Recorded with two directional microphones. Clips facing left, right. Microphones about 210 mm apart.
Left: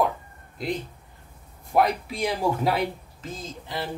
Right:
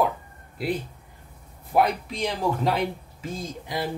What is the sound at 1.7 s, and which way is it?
Speech, 5° left (ahead or behind).